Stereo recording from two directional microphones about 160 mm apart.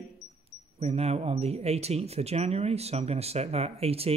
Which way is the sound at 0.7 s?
40° right (ahead or behind).